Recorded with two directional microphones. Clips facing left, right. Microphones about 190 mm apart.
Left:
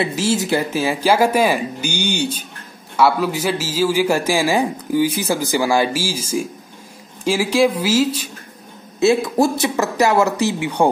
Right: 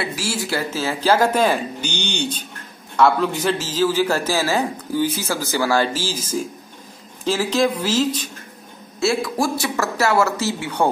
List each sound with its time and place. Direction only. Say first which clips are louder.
0.0 s a man's voice: left 6 dB; 20° left (ahead or behind)
9.0 s a man's voice: left 5 dB; 20° left (ahead or behind)